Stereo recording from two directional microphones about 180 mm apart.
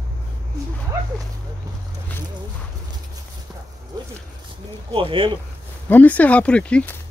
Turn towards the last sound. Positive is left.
turn(degrees=5)  # may be behind; listen again after turning